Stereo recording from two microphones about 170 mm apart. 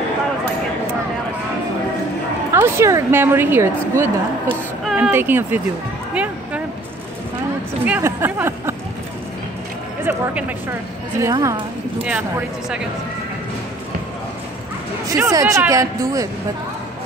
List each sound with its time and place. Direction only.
2.5 s a woman's voice: 15° right (ahead or behind)
6.1 s music: 5° right (ahead or behind)
7.8 s a woman's voice: 10° right (ahead or behind)
10.0 s a woman's voice: 15° right (ahead or behind)
12.0 s a woman's voice: 10° right (ahead or behind)
15.0 s speech: 20° right (ahead or behind)